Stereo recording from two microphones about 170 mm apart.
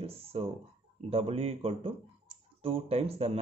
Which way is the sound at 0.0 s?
35° right (ahead or behind).